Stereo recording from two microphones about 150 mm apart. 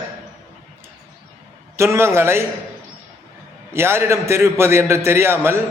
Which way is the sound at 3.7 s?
15° right (ahead or behind).